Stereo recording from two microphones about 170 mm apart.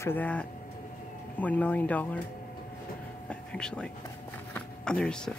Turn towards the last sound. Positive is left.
turn(degrees=5)  # may be behind; listen again after turning